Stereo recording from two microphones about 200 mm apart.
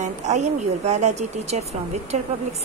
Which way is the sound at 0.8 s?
35° right (ahead or behind).